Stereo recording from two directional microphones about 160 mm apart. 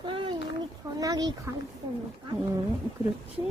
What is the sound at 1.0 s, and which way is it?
Speech, 25° right (ahead or behind).